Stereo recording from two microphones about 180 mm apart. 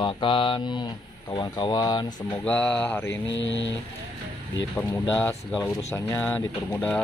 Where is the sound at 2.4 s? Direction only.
10° left (ahead or behind).